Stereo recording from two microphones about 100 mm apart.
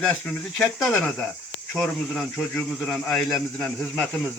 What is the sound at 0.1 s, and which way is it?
A man's voice, 10° left (ahead or behind).